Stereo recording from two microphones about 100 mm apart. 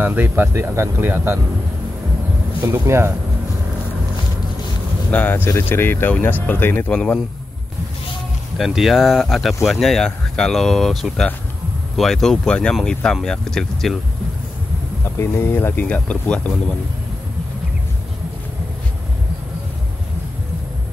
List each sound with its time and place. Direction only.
0.0 s speech: 20° right (ahead or behind)
2.6 s speech: 25° right (ahead or behind)
5.1 s speech: 20° left (ahead or behind)
8.5 s speech: centre (ahead or behind)
15.1 s speech: 25° left (ahead or behind)